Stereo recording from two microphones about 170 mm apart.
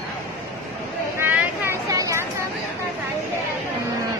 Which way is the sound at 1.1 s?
15° right (ahead or behind).